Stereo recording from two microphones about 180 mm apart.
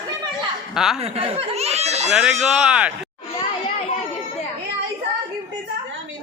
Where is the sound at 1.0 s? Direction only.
35° right (ahead or behind).